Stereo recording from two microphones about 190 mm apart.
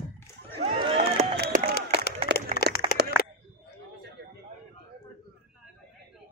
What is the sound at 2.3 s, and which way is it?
Crack, 65° right (ahead or behind).